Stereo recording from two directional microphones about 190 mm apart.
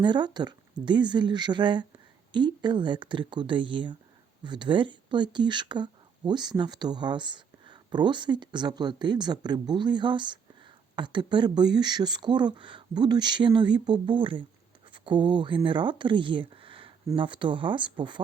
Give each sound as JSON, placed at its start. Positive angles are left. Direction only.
{"t": 0.0, "sound": "speech", "side_deg": -25}